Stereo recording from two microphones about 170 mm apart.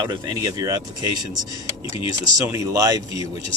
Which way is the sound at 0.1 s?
20° right (ahead or behind).